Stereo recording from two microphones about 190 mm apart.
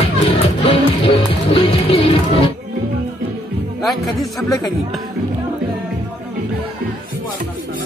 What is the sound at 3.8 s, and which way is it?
Music, centre (ahead or behind).